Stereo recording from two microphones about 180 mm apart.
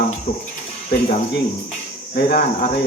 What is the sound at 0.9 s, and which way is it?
Speech, 65° left (ahead or behind).